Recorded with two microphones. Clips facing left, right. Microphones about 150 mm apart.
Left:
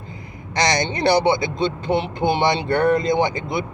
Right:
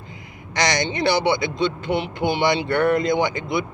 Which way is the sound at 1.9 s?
25° left (ahead or behind).